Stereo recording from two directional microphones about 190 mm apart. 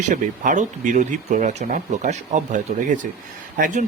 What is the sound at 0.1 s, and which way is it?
Speech, 40° right (ahead or behind).